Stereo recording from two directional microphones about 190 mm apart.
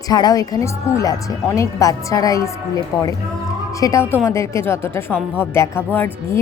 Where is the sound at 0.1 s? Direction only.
20° left (ahead or behind).